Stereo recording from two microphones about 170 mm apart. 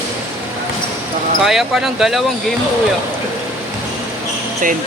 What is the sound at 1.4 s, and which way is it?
Speech, centre (ahead or behind).